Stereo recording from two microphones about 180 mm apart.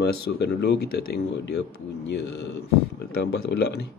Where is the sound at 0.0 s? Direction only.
65° left (ahead or behind).